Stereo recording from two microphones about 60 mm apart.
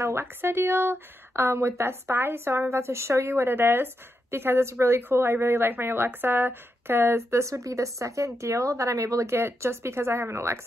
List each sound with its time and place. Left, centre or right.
0.2 s speech: right